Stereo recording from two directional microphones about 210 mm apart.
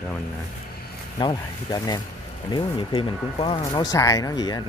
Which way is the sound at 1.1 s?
20° left (ahead or behind).